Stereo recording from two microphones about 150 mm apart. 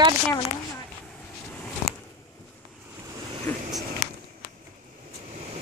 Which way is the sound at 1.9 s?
Centre (ahead or behind).